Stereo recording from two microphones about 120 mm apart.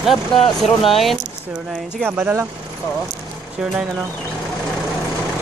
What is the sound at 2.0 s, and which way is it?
Speech, 20° right (ahead or behind).